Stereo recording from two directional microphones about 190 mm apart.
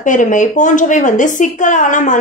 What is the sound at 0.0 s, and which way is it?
A woman's voice, 40° left (ahead or behind).